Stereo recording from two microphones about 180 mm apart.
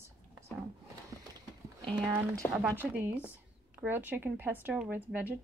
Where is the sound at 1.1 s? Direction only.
20° right (ahead or behind).